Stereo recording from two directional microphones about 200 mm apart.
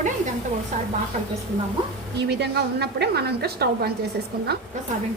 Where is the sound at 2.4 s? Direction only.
55° right (ahead or behind).